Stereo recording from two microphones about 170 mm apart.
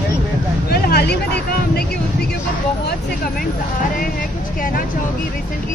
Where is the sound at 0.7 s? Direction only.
65° left (ahead or behind).